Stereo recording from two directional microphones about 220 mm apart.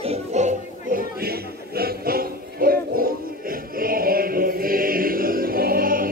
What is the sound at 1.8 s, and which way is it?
Music, 40° right (ahead or behind).